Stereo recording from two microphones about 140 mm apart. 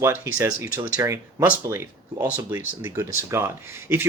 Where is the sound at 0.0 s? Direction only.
20° right (ahead or behind).